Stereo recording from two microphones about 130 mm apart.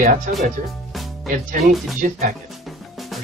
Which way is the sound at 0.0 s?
90° right.